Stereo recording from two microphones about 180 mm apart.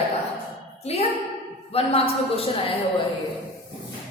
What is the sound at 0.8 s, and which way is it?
A woman's voice, 35° left (ahead or behind).